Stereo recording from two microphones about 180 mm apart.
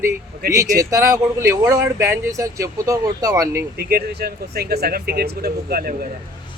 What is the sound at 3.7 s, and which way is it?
Speech, 60° right (ahead or behind).